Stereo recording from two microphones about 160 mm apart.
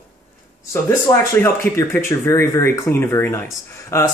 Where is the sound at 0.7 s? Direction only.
15° left (ahead or behind).